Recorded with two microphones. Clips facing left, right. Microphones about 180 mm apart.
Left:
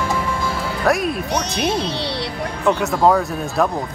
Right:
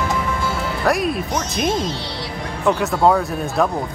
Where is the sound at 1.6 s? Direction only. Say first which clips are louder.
Right 2 dB; 65° left (ahead or behind).